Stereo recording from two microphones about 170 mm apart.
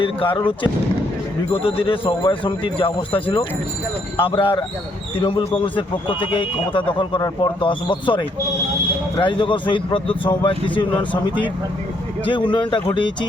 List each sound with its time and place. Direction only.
0.0 s speech: 30° left (ahead or behind)
12.2 s speech: 30° left (ahead or behind)